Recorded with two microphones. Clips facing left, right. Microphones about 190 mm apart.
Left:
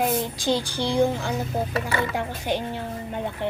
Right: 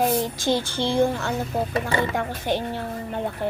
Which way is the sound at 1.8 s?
20° right (ahead or behind).